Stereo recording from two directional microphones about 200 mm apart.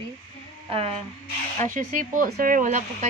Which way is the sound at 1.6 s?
40° right (ahead or behind).